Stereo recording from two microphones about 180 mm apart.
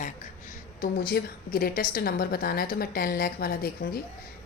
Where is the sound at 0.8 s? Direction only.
55° left (ahead or behind).